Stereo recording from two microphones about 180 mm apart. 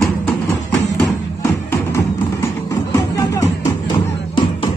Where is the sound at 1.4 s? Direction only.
15° left (ahead or behind).